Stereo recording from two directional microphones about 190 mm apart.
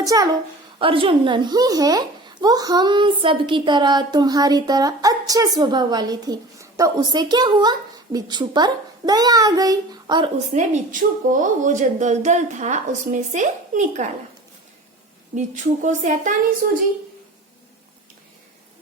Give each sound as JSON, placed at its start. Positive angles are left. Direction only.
{"t": 0.0, "sound": "a woman's voice", "side_deg": -20}
{"t": 10.3, "sound": "a woman's voice", "side_deg": -35}
{"t": 15.4, "sound": "a woman's voice", "side_deg": -40}